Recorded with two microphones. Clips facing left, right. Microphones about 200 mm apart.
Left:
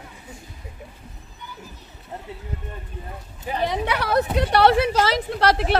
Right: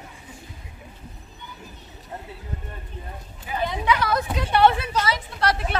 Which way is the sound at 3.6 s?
70° left (ahead or behind).